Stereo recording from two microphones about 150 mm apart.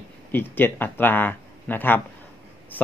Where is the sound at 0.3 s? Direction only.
15° left (ahead or behind).